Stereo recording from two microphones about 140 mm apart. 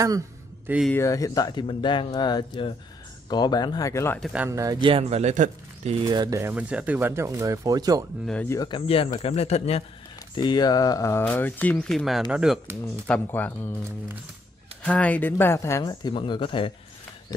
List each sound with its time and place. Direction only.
0.9 s speech: 25° left (ahead or behind)
4.5 s speech: 20° right (ahead or behind)
4.7 s speech: 40° right (ahead or behind)
5.2 s speech: 55° right (ahead or behind)
6.0 s speech: 30° right (ahead or behind)
6.4 s speech: 10° right (ahead or behind); by 8.0 s 25° right (ahead or behind)
8.5 s a man's voice: 30° left (ahead or behind); by 9.8 s 45° left (ahead or behind)
10.3 s speech: 35° left (ahead or behind); by 12.5 s 5° right (ahead or behind)
12.8 s speech: 10° left (ahead or behind)
14.8 s speech: 10° left (ahead or behind); by 16.7 s 40° left (ahead or behind)